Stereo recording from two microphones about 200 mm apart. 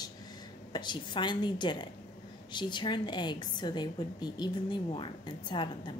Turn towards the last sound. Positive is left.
turn(degrees=20)  # may be behind; listen again after turning